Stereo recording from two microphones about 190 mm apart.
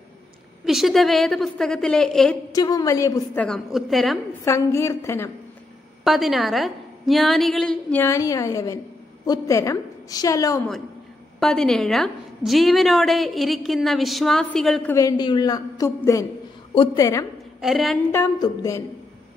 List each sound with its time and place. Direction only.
0.7 s a woman's voice: centre (ahead or behind)
2.5 s a woman's voice: 20° left (ahead or behind)
3.4 s a woman's voice: centre (ahead or behind)
4.5 s a woman's voice: 15° left (ahead or behind)
6.0 s a woman's voice: centre (ahead or behind); by 10.7 s 15° left (ahead or behind)
11.3 s a woman's voice: centre (ahead or behind)
17.6 s a woman's voice: centre (ahead or behind)
18.1 s a woman's voice: 15° left (ahead or behind)